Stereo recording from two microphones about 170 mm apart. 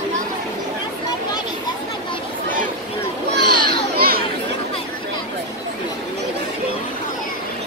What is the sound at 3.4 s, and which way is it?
Children playing, 25° left (ahead or behind).